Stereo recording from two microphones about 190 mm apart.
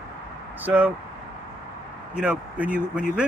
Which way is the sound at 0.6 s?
10° right (ahead or behind).